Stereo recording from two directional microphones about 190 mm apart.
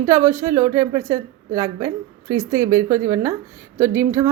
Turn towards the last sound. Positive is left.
turn(degrees=-10)  # may be behind; listen again after turning